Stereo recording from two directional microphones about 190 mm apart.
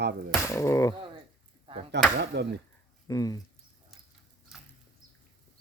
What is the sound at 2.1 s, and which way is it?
Speech, 60° right (ahead or behind).